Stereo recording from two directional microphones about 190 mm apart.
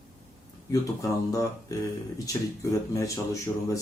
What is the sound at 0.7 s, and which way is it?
Speech, 15° left (ahead or behind).